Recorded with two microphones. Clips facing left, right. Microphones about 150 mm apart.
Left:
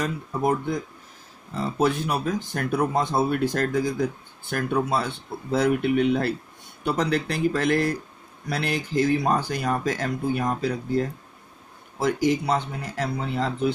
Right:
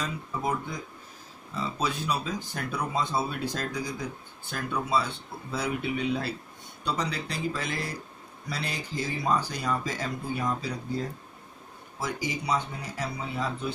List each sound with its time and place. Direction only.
0.0 s speech: 55° left (ahead or behind)